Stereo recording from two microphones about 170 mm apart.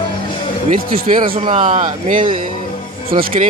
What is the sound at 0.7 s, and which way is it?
Speech, 55° right (ahead or behind).